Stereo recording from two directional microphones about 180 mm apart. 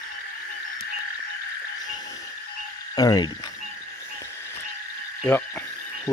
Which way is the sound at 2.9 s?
20° left (ahead or behind).